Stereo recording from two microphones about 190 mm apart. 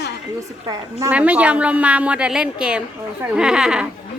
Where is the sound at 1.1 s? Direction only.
5° right (ahead or behind).